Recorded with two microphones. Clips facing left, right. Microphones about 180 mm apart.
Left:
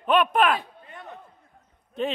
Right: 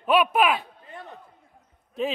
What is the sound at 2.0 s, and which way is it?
Speech, centre (ahead or behind).